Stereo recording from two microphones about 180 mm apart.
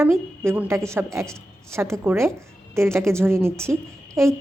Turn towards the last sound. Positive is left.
turn(degrees=-15)  # may be behind; listen again after turning